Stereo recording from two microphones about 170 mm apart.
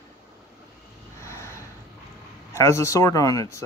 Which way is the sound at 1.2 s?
15° left (ahead or behind).